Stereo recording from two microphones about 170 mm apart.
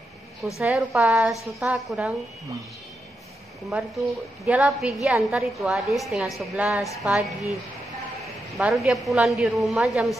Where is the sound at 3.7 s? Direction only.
5° right (ahead or behind).